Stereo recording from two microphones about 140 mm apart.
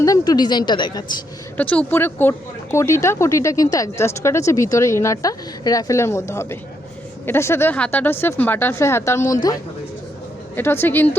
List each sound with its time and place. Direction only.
0.0 s a woman's voice: 25° left (ahead or behind)
1.5 s speech: 10° left (ahead or behind)